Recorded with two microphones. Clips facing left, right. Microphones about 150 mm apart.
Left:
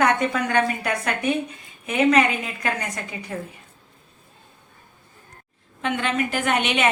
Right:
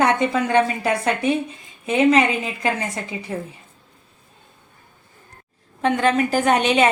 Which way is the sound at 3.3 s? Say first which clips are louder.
Right 3 dB; 25° right (ahead or behind).